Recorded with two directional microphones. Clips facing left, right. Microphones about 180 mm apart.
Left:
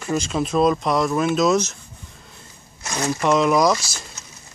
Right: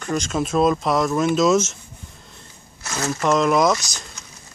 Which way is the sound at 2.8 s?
15° left (ahead or behind).